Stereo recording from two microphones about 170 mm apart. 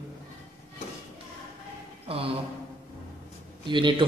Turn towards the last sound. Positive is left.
turn(degrees=-30)  # may be behind; listen again after turning